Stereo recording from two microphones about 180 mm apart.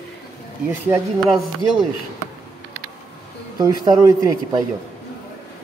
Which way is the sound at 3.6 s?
20° right (ahead or behind).